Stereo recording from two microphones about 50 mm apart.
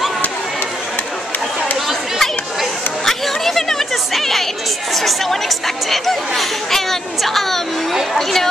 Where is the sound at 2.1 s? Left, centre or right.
Centre.